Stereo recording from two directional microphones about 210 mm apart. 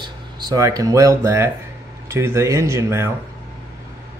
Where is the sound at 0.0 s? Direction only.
20° right (ahead or behind).